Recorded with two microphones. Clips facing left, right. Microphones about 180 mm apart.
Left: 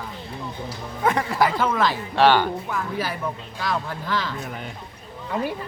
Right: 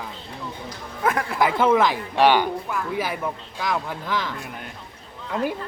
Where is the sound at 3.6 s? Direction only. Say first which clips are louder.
Right 1 dB; 15° right (ahead or behind).